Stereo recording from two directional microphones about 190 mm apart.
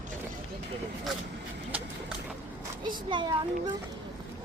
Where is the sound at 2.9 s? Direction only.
25° right (ahead or behind).